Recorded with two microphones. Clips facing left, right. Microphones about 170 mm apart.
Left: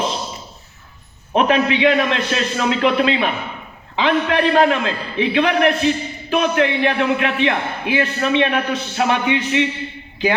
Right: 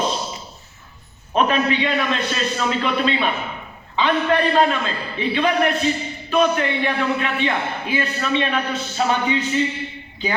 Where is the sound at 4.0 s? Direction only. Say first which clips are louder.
Left 1 dB; 85° left.